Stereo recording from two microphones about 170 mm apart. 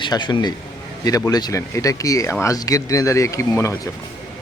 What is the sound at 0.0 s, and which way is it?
Speech, 25° left (ahead or behind).